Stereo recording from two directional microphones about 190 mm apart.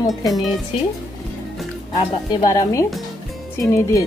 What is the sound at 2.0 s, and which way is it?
Speech, 20° left (ahead or behind).